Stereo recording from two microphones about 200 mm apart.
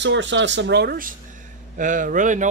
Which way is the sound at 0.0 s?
65° right (ahead or behind).